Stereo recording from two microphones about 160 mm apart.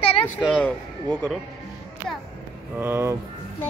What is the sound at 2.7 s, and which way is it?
Speech, 15° right (ahead or behind).